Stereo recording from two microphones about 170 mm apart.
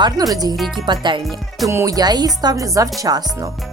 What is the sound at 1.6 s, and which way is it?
A woman's voice, 20° right (ahead or behind).